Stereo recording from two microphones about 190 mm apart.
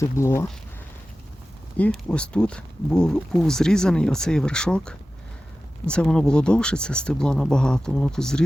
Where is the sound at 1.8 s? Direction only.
5° left (ahead or behind).